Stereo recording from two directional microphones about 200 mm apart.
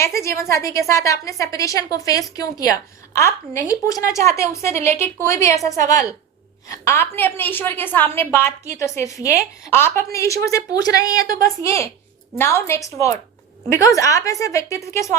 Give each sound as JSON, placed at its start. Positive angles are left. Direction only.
{"t": 0.0, "sound": "a woman's voice", "side_deg": 15}
{"t": 11.2, "sound": "a woman's voice", "side_deg": -45}
{"t": 11.4, "sound": "a woman's voice", "side_deg": 15}